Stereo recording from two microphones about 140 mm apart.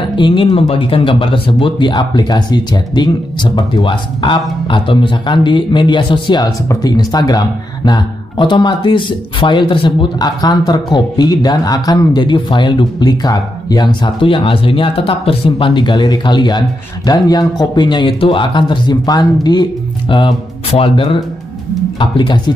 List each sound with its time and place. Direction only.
0.1 s a man's voice: 35° left (ahead or behind)